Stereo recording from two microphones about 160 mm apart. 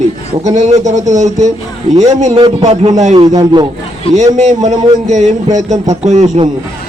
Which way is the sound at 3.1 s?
25° right (ahead or behind).